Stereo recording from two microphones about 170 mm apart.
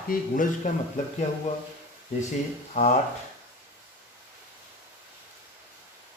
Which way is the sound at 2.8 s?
40° left (ahead or behind).